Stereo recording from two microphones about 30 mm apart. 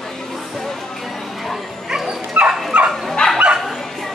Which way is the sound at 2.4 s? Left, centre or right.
Right.